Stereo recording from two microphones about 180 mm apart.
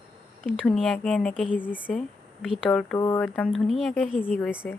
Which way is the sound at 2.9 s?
15° left (ahead or behind).